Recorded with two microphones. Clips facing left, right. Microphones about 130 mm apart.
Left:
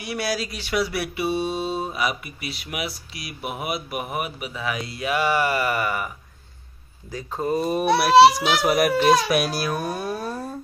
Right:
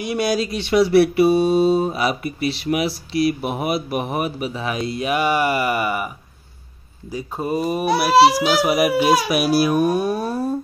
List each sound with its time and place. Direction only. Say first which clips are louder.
0.0 s a child's voice: right 6 dB; 20° right (ahead or behind)